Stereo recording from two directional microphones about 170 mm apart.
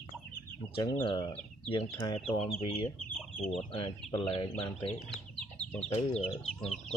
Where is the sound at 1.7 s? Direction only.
30° left (ahead or behind).